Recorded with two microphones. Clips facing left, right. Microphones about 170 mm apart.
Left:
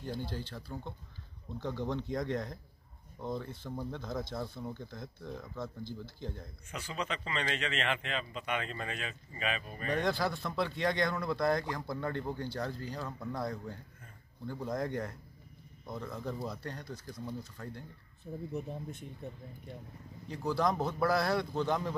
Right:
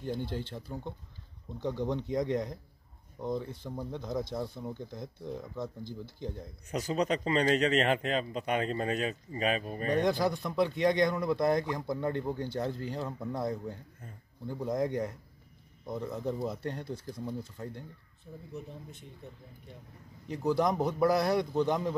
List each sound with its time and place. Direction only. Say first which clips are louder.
0.0 s speech: right 4 dB; 20° right (ahead or behind)
6.7 s a man's voice: right 9 dB; 40° right (ahead or behind)
9.9 s speech: right 4 dB; 15° right (ahead or behind)
18.5 s speech: left 2 dB; 50° left (ahead or behind)
20.2 s speech: right 3 dB; 20° right (ahead or behind)